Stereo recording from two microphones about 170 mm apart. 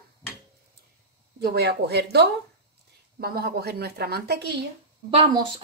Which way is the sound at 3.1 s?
65° right (ahead or behind).